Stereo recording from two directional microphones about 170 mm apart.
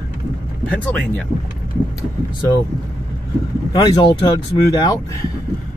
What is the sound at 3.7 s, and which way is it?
Speech, 25° left (ahead or behind).